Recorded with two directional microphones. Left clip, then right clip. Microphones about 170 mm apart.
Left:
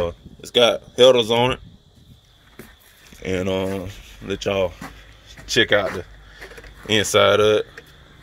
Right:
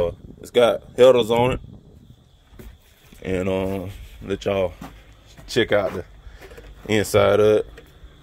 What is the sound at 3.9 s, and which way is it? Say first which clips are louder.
Speech: even; 25° right (ahead or behind).